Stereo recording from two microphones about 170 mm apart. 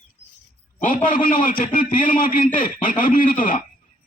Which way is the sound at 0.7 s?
50° left (ahead or behind).